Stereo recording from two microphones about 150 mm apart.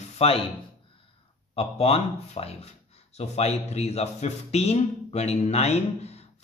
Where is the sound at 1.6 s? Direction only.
40° left (ahead or behind).